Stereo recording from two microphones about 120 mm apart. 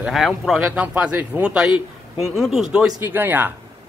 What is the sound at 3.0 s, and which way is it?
Speech, 15° right (ahead or behind).